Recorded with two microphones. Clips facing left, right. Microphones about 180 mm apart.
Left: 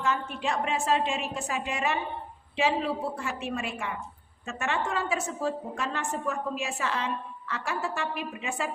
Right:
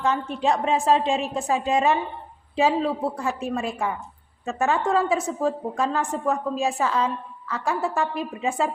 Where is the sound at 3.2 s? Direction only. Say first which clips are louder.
Right 6 dB; 35° right (ahead or behind).